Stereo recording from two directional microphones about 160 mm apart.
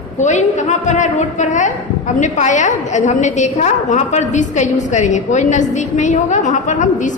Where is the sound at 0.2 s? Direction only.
50° left (ahead or behind).